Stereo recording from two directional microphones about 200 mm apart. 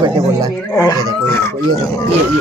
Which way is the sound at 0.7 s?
15° left (ahead or behind).